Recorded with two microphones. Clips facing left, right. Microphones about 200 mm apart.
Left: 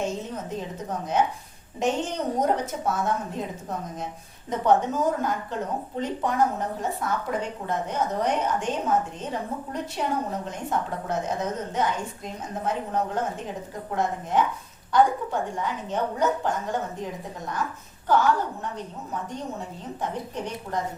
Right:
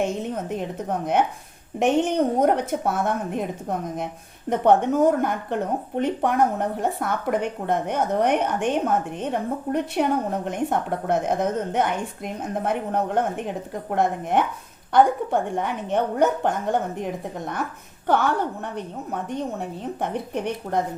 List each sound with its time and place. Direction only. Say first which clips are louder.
0.0 s a woman's voice: right 4 dB; 60° right (ahead or behind)
18.1 s a woman's voice: right 1 dB; 60° right (ahead or behind)